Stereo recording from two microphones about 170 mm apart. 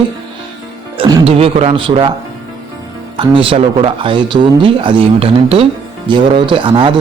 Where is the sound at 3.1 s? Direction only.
30° right (ahead or behind).